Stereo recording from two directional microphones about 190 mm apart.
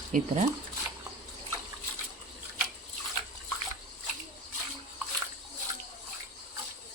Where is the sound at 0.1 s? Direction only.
45° right (ahead or behind).